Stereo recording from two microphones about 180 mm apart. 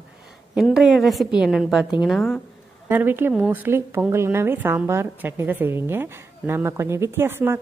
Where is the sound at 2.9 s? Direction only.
10° right (ahead or behind).